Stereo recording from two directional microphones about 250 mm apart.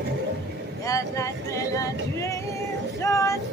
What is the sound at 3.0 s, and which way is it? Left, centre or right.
Vehicle, centre.